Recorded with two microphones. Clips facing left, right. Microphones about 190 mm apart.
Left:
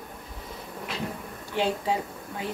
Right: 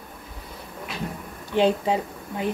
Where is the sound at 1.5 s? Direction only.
20° right (ahead or behind).